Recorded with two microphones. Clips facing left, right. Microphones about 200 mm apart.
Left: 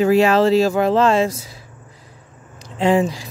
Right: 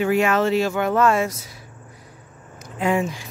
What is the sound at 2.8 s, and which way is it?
Speech, 30° left (ahead or behind).